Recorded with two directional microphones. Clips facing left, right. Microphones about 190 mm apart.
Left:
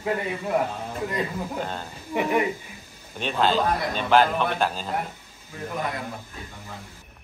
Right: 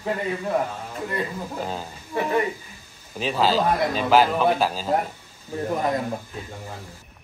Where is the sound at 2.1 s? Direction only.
15° left (ahead or behind).